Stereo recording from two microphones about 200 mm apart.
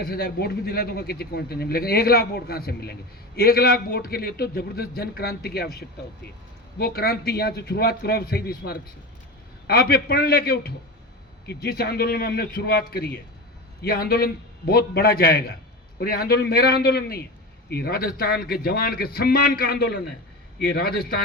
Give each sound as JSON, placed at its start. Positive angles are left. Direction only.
{"t": 0.0, "sound": "a man's voice", "side_deg": 50}